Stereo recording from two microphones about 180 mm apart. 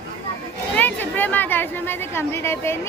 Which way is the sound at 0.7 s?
10° left (ahead or behind).